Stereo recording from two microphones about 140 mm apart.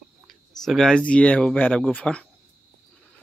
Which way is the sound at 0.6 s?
5° left (ahead or behind).